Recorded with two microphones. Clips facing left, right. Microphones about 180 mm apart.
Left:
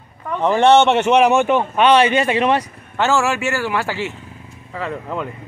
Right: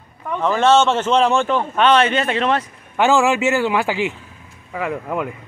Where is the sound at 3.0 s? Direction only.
15° right (ahead or behind).